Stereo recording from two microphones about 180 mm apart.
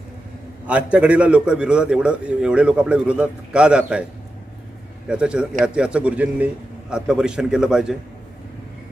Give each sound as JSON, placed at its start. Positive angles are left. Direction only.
{"t": 0.7, "sound": "a man's voice", "side_deg": -5}
{"t": 5.0, "sound": "a man's voice", "side_deg": -5}